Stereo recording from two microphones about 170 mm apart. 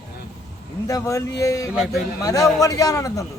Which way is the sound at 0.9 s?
20° left (ahead or behind).